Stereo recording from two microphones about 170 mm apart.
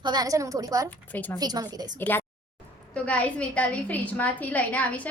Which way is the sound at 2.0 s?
10° left (ahead or behind).